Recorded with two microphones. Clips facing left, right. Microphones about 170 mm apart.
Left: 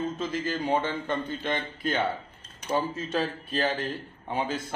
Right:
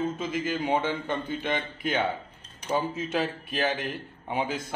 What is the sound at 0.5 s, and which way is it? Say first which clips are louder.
A man's voice: right 1 dB; 5° right (ahead or behind).